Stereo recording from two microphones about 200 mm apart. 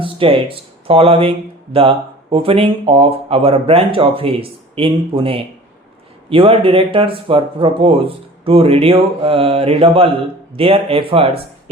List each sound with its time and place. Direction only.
0.0 s speech: 25° right (ahead or behind)